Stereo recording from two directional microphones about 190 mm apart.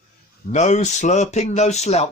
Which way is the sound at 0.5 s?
35° left (ahead or behind).